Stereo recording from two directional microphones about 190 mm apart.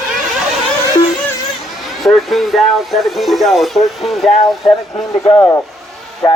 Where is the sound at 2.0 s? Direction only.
Centre (ahead or behind).